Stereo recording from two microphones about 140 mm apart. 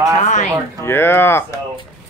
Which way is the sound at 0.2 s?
55° left (ahead or behind).